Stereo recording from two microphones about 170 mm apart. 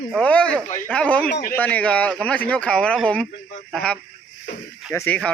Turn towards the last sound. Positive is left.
turn(degrees=15)  # may be behind; listen again after turning